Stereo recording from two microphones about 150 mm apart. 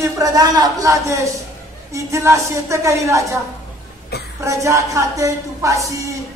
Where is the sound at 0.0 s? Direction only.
25° right (ahead or behind).